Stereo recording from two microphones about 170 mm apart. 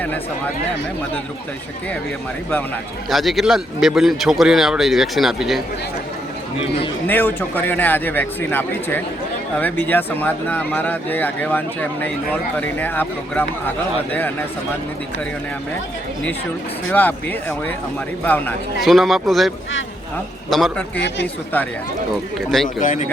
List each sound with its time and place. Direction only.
3.1 s speech: centre (ahead or behind)
7.1 s speech: 10° left (ahead or behind)
16.9 s speech: 10° left (ahead or behind)
18.8 s speech: centre (ahead or behind)
22.8 s speech: 45° left (ahead or behind)